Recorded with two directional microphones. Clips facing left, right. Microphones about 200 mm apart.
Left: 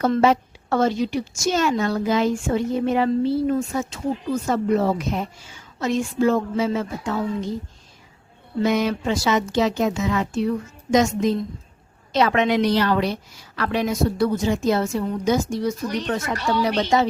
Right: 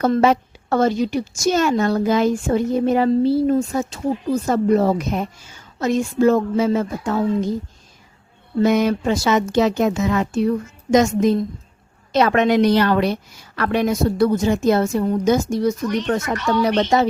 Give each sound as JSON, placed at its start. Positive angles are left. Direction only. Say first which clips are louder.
{"t": 0.0, "sound": "a woman's voice", "louder": "right 2 dB", "side_deg": -50}
{"t": 8.6, "sound": "a woman's voice", "louder": "right 4 dB", "side_deg": -50}